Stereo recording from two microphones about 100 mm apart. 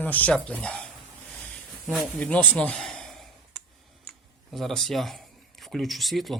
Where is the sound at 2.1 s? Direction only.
15° left (ahead or behind).